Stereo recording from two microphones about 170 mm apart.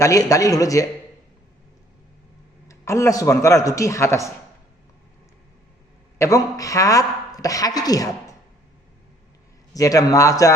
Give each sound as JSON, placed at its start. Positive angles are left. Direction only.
{"t": 0.0, "sound": "speech", "side_deg": 20}
{"t": 2.6, "sound": "a man's voice", "side_deg": 15}
{"t": 6.1, "sound": "speech", "side_deg": 20}
{"t": 9.7, "sound": "speech", "side_deg": 20}